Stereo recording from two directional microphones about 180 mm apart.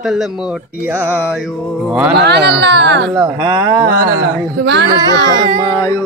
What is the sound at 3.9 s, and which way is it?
Speech, 50° right (ahead or behind).